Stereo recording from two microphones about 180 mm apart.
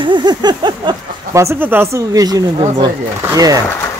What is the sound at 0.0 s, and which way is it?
Speech, 25° right (ahead or behind).